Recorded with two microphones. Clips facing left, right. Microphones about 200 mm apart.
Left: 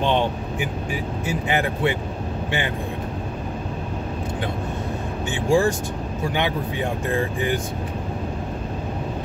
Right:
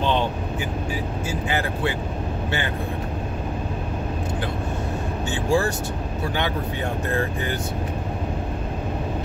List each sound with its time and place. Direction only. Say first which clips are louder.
0.0 s vehicle: left 1 dB; 15° left (ahead or behind)
1.2 s speech: left 4 dB; 20° left (ahead or behind)
5.3 s speech: left 3 dB; 15° left (ahead or behind)